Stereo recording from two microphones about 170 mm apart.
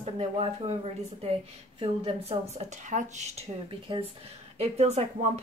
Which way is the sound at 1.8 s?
35° right (ahead or behind).